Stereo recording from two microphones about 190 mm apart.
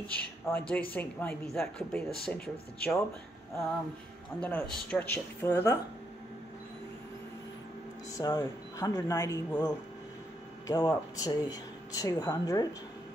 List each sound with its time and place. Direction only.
0.5 s speech: 5° left (ahead or behind)
4.4 s speech: 5° left (ahead or behind)
8.1 s speech: 20° left (ahead or behind)